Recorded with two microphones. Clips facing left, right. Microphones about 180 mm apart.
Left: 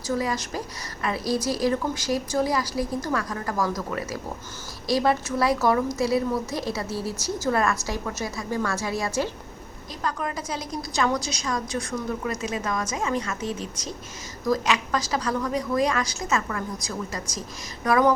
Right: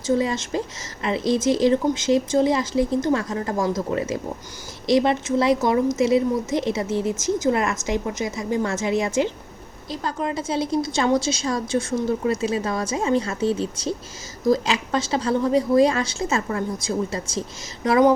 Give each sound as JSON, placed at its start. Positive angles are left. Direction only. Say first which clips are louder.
{"t": 0.1, "sound": "a woman's voice", "louder": "right 5 dB", "side_deg": -25}